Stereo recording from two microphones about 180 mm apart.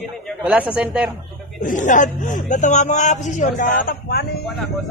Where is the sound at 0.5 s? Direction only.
5° right (ahead or behind).